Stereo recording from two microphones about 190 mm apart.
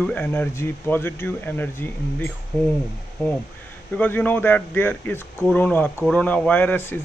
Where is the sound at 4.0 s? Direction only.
10° left (ahead or behind).